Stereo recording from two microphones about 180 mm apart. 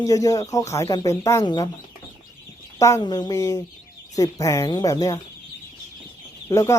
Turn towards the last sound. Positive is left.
turn(degrees=15)  # may be behind; listen again after turning